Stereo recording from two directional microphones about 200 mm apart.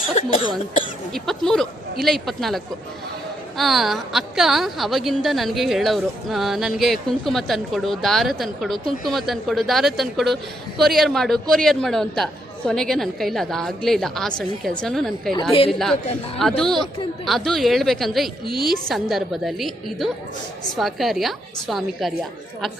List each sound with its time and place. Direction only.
0.1 s speech: 30° left (ahead or behind)
1.1 s a woman's voice: centre (ahead or behind)
3.6 s a woman's voice: centre (ahead or behind)
16.4 s a woman's voice: centre (ahead or behind)